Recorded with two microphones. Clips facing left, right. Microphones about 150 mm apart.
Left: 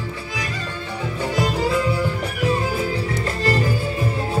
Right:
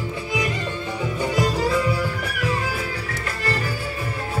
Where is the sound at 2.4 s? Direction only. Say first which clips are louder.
Left 5 dB; 25° left (ahead or behind).